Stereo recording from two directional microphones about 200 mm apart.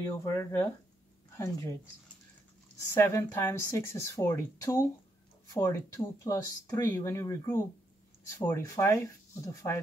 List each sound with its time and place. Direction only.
0.0 s speech: 15° left (ahead or behind)
2.9 s speech: 10° left (ahead or behind)